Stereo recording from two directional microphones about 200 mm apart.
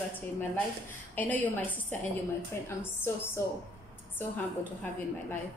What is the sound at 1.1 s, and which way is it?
A woman's voice, 10° left (ahead or behind).